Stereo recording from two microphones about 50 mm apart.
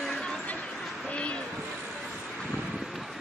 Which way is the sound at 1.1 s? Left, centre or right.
Left.